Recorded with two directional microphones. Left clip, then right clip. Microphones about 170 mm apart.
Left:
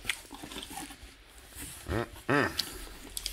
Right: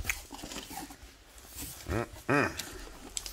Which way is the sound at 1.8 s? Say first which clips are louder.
Left 1 dB; 10° right (ahead or behind).